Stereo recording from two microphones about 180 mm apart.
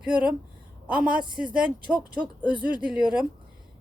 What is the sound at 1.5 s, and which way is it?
Speech, 5° right (ahead or behind).